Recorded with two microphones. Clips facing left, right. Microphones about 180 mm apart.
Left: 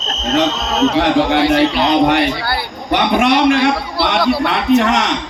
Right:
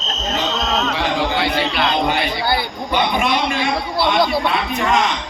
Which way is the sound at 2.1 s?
90° left.